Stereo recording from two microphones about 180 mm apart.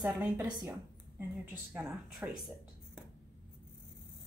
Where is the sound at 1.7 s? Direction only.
5° right (ahead or behind).